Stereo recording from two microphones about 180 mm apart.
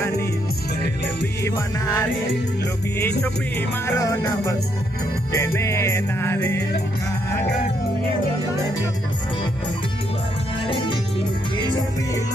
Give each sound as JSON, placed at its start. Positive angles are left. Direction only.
{"t": 1.4, "sound": "music", "side_deg": 15}
{"t": 3.5, "sound": "music", "side_deg": 15}
{"t": 10.7, "sound": "music", "side_deg": 25}